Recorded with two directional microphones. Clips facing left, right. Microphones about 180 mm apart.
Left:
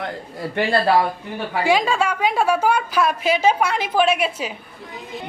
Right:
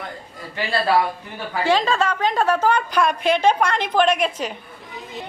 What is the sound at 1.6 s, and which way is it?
A woman's voice, 10° left (ahead or behind).